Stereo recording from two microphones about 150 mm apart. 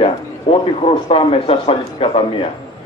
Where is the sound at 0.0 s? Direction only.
40° left (ahead or behind).